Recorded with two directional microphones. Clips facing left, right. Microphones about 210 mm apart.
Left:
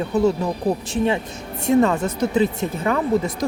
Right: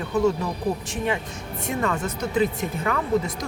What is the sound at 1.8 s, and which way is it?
Speech, 25° left (ahead or behind).